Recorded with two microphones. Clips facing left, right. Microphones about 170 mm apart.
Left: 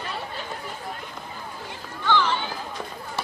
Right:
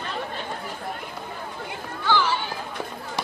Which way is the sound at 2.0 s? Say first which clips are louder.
Even; 10° right (ahead or behind).